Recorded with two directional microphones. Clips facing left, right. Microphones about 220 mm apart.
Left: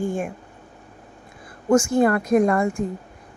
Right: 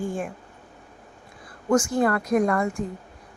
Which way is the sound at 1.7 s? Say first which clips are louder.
Left 4 dB; 25° left (ahead or behind).